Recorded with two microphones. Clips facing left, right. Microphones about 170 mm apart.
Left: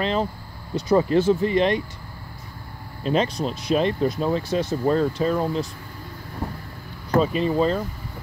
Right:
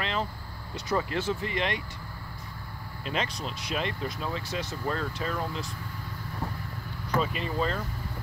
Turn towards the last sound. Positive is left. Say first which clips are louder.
# left 9 dB
turn(degrees=30)  # may be behind; listen again after turning